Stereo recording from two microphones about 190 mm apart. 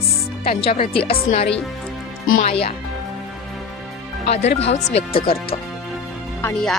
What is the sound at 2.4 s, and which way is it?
Speech, 30° left (ahead or behind).